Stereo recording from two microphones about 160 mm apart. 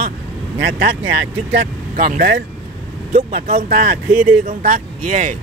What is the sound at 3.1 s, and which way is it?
Speech, 50° right (ahead or behind).